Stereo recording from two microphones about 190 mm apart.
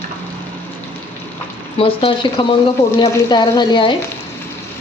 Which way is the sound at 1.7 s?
30° left (ahead or behind).